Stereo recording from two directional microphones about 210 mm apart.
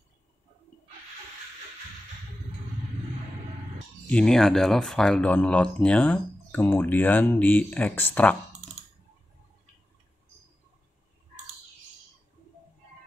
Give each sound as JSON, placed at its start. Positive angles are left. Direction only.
{"t": 4.1, "sound": "speech", "side_deg": 5}